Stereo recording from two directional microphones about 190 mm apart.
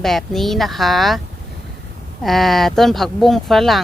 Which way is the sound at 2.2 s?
Centre (ahead or behind).